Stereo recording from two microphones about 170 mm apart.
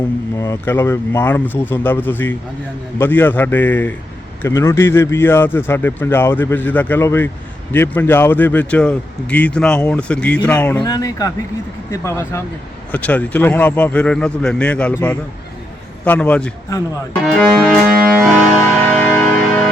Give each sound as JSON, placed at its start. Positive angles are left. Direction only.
{"t": 0.3, "sound": "speech", "side_deg": 15}
{"t": 10.8, "sound": "speech", "side_deg": 20}
{"t": 17.2, "sound": "accordion", "side_deg": 0}
{"t": 19.0, "sound": "music", "side_deg": 10}